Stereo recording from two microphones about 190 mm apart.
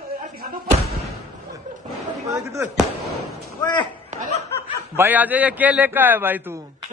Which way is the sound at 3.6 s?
25° left (ahead or behind).